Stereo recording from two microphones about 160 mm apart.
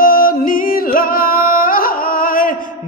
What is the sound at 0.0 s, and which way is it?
Music, 65° left (ahead or behind).